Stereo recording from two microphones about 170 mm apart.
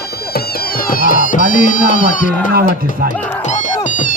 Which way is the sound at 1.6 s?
50° left (ahead or behind).